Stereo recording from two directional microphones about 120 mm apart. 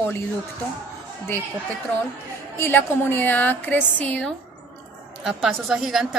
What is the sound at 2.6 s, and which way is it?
A woman's voice, 20° left (ahead or behind).